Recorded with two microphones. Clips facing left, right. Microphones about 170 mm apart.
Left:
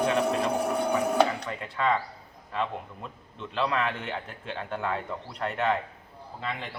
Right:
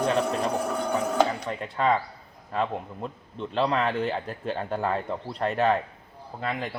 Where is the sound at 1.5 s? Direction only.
35° right (ahead or behind).